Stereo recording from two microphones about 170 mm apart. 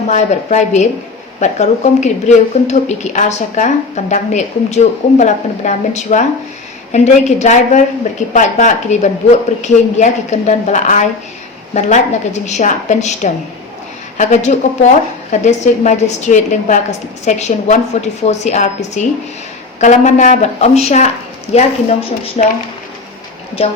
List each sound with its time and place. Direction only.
0.1 s a woman's voice: 45° left (ahead or behind)